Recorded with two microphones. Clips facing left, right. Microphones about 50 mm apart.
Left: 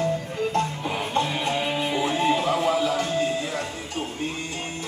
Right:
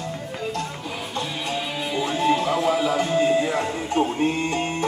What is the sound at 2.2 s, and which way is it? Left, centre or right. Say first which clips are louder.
Music: right 3 dB; centre.